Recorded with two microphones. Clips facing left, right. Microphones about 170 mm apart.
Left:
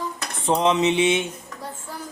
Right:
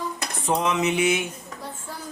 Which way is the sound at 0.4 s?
30° left (ahead or behind).